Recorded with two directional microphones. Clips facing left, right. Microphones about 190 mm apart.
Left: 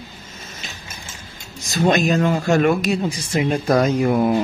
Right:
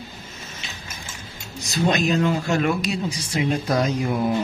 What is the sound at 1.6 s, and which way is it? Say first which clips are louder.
Speech: left 4 dB; 50° left (ahead or behind).